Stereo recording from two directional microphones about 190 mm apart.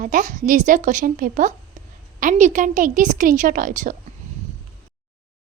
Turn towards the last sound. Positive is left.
turn(degrees=-45)  # may be behind; listen again after turning